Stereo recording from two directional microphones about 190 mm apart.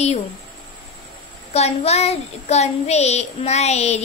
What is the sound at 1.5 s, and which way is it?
Child singing, 35° left (ahead or behind).